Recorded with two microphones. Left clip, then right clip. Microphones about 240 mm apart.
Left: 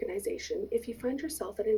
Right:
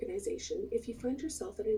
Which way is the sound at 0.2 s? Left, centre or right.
Left.